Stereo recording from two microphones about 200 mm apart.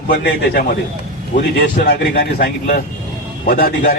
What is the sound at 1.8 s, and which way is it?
A man's voice, 60° left (ahead or behind).